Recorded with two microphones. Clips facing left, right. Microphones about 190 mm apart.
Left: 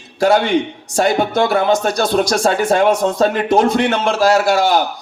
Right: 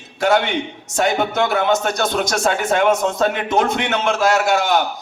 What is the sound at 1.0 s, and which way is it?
A man's voice, 35° left (ahead or behind).